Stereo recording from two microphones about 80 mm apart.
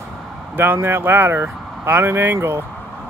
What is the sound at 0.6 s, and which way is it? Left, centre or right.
Speech, right.